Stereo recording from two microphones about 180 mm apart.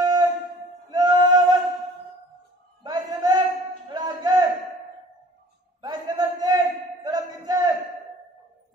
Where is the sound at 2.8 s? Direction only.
20° right (ahead or behind).